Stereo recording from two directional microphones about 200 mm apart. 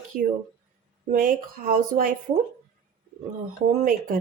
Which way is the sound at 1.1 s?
45° right (ahead or behind).